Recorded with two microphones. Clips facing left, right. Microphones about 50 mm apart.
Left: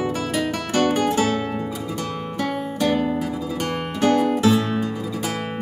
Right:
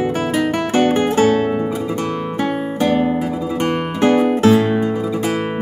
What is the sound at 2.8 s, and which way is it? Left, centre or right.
Guitar, right.